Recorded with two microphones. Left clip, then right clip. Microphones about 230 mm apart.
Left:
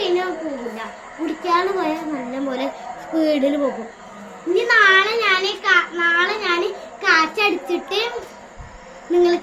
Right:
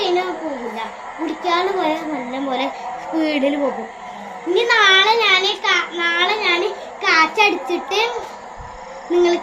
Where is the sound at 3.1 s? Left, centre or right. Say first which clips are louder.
Left 1 dB; centre.